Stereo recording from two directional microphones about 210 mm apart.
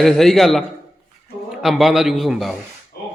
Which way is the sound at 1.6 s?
Centre (ahead or behind).